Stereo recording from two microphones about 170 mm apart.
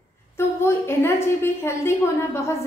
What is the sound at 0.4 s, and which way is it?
A woman's voice, 15° left (ahead or behind).